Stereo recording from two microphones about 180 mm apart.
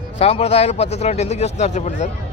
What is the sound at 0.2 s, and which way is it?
A man's voice, 35° left (ahead or behind).